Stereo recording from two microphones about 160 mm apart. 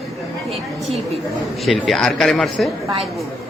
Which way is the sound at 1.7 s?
Centre (ahead or behind).